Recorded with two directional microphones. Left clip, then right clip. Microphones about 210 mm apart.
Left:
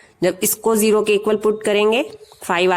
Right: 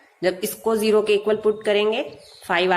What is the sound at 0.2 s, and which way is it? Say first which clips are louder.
A woman's voice: left 4 dB; 40° left (ahead or behind).